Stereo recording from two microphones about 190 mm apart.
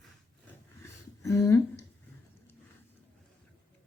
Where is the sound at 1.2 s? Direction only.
15° left (ahead or behind).